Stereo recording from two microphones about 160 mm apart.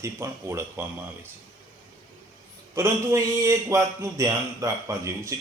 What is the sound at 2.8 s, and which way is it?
A man's voice, 15° right (ahead or behind).